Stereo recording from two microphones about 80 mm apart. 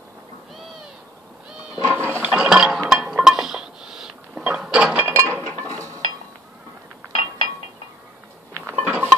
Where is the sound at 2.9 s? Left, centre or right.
Centre.